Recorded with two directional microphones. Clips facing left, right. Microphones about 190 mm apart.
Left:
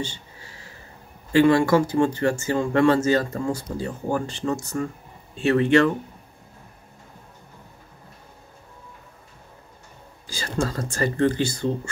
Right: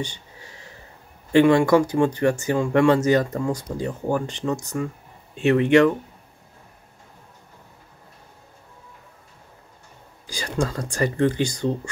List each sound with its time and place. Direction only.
0.0 s a sound: 20° right (ahead or behind)
1.3 s speech: 15° right (ahead or behind)
10.2 s speech: 15° right (ahead or behind)